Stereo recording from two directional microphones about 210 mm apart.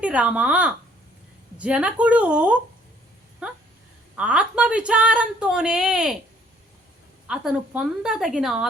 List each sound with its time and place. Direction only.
0.0 s speech: 5° right (ahead or behind)
3.4 s a sound: 5° right (ahead or behind)
4.1 s speech: 5° right (ahead or behind)
7.3 s speech: 5° right (ahead or behind)